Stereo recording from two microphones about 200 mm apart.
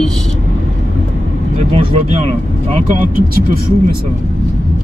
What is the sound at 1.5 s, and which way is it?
Speech, 30° right (ahead or behind).